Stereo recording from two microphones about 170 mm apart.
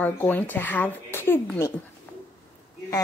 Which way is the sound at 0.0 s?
10° left (ahead or behind).